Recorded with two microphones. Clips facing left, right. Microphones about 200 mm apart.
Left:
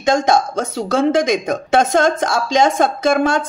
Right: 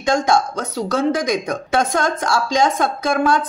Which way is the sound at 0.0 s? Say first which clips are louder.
Left 2 dB; 25° left (ahead or behind).